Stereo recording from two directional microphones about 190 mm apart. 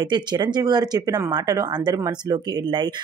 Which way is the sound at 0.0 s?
25° right (ahead or behind).